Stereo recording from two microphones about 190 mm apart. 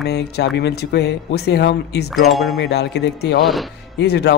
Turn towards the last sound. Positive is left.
turn(degrees=60)  # may be behind; listen again after turning